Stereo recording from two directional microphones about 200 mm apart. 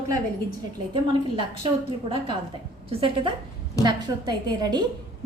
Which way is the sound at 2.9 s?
30° right (ahead or behind).